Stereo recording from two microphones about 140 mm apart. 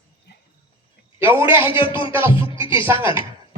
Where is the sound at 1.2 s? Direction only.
15° right (ahead or behind).